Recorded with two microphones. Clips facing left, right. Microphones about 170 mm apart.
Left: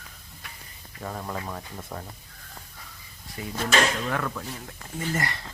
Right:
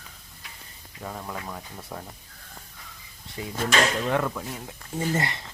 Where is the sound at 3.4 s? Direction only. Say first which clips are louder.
Even; 25° right (ahead or behind).